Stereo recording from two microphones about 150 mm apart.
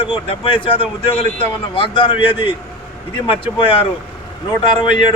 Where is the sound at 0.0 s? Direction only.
35° left (ahead or behind).